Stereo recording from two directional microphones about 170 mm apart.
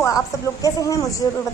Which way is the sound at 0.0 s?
20° left (ahead or behind).